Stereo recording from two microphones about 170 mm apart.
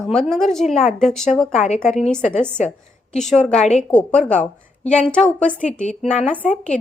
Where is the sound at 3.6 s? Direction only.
40° left (ahead or behind).